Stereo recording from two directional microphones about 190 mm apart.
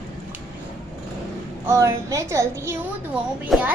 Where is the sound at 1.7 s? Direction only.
15° right (ahead or behind).